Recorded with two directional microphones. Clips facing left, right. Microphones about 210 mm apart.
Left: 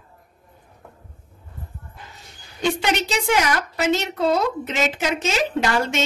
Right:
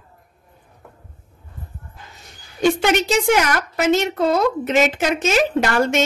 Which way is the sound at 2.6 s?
50° right (ahead or behind).